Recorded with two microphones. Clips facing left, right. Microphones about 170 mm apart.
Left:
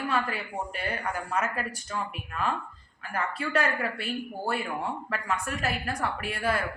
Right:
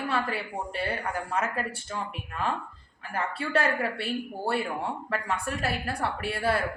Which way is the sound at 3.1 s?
30° right (ahead or behind).